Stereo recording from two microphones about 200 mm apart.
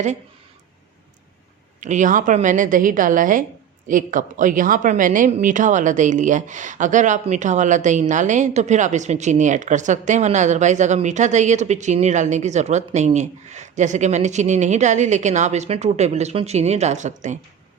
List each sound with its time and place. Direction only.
1.8 s a woman's voice: 40° right (ahead or behind)